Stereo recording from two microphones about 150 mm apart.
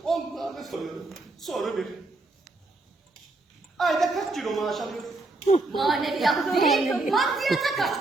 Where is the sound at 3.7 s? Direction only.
Centre (ahead or behind).